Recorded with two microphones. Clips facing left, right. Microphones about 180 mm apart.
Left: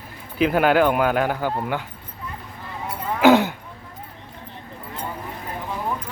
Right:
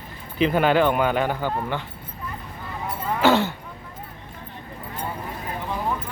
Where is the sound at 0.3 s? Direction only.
5° left (ahead or behind).